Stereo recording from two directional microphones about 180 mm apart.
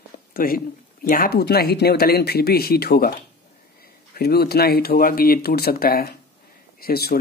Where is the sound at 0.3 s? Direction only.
55° left (ahead or behind).